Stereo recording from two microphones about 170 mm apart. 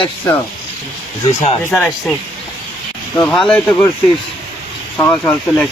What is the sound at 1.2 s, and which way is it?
Speech, 40° left (ahead or behind).